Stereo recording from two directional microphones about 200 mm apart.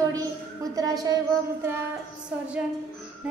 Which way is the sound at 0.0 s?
15° right (ahead or behind).